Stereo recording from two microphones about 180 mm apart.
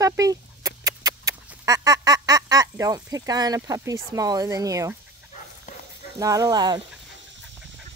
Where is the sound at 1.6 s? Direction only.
20° right (ahead or behind).